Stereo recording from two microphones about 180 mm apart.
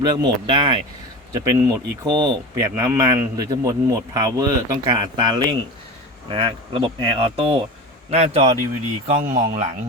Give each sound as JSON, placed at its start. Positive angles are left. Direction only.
{"t": 0.0, "sound": "a man's voice", "side_deg": -25}